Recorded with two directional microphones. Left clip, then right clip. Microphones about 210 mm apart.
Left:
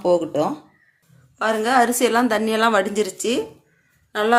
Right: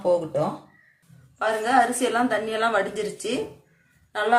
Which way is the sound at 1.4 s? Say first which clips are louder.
Left 3 dB; 55° left (ahead or behind).